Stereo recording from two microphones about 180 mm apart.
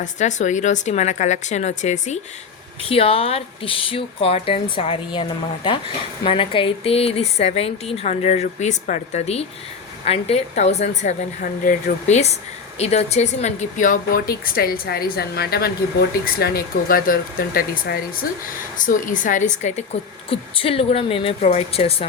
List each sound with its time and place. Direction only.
0.0 s a woman's voice: 40° left (ahead or behind)
6.2 s a woman's voice: 30° left (ahead or behind)